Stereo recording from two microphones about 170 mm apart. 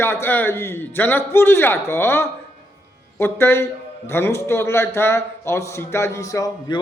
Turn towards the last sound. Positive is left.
turn(degrees=20)  # may be behind; listen again after turning